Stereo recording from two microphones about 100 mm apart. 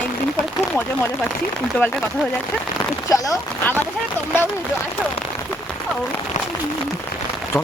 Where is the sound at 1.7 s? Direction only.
15° left (ahead or behind).